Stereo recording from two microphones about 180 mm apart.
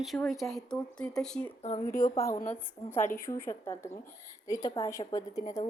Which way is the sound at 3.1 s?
15° left (ahead or behind).